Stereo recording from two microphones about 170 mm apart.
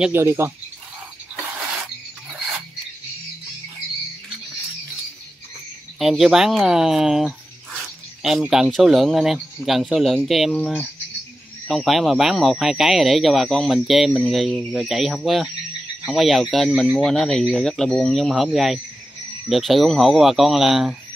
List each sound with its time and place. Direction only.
0.0 s speech: 15° right (ahead or behind)
5.9 s speech: centre (ahead or behind)